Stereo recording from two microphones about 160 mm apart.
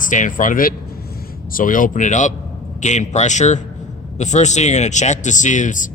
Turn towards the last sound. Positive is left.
turn(degrees=55)  # may be behind; listen again after turning